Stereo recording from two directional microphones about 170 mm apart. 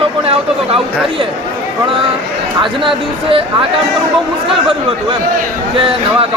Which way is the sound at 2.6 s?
30° right (ahead or behind).